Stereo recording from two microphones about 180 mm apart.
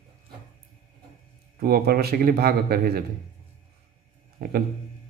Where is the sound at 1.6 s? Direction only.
60° right (ahead or behind).